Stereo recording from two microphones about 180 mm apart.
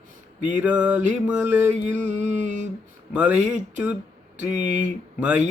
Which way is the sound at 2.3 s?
40° right (ahead or behind).